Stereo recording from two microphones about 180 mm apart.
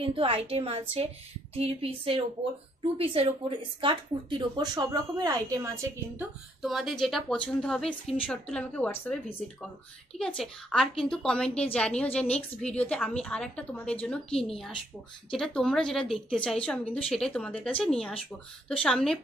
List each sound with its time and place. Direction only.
0.0 s a woman's voice: 30° right (ahead or behind)
6.6 s a woman's voice: centre (ahead or behind)
15.3 s a woman's voice: 5° left (ahead or behind)